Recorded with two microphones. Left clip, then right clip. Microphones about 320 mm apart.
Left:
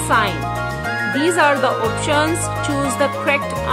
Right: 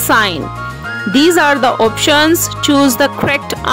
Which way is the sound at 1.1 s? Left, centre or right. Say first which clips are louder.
Right 6 dB; right.